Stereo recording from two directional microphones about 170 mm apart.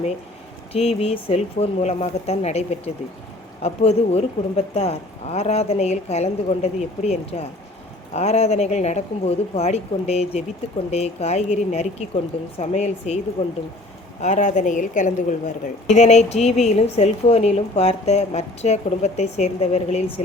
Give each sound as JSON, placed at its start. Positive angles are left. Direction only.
{"t": 0.7, "sound": "speech", "side_deg": 35}